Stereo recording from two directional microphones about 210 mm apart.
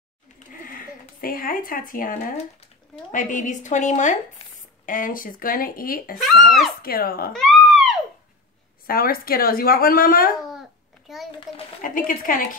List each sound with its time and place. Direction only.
1.2 s a woman's voice: 45° left (ahead or behind)
6.1 s a child's voice: centre (ahead or behind)
6.8 s a woman's voice: 45° left (ahead or behind)
7.3 s a sound: centre (ahead or behind)
8.8 s a woman's voice: 45° left (ahead or behind)
11.1 s a sound: centre (ahead or behind)
11.8 s a woman's voice: 40° left (ahead or behind)